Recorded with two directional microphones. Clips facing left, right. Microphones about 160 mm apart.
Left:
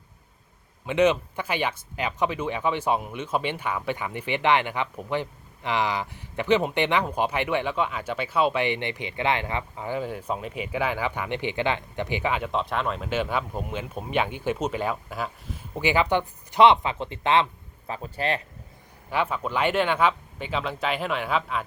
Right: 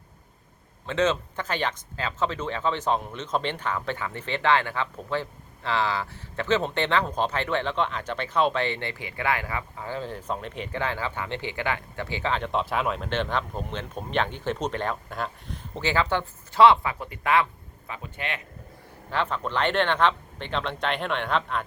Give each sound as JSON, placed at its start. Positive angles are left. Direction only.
{"t": 0.9, "sound": "speech", "side_deg": 15}
{"t": 12.5, "sound": "speech", "side_deg": 0}
{"t": 17.9, "sound": "speech", "side_deg": 35}
{"t": 19.1, "sound": "speech", "side_deg": 10}